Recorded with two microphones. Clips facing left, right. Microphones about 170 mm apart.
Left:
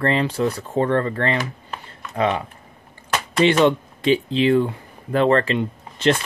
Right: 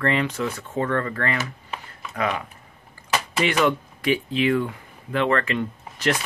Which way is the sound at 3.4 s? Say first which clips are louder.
Left 6 dB; 25° left (ahead or behind).